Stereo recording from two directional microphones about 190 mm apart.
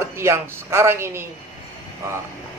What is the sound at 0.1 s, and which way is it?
A man's voice, 15° right (ahead or behind).